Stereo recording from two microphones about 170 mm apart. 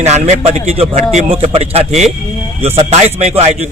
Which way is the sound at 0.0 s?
40° right (ahead or behind).